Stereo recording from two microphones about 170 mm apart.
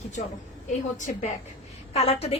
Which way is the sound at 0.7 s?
45° left (ahead or behind).